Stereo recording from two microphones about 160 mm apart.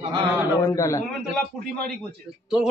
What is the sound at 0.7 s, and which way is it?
Speech, 20° left (ahead or behind).